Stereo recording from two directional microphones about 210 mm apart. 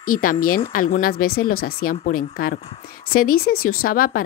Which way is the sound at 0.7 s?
40° left (ahead or behind).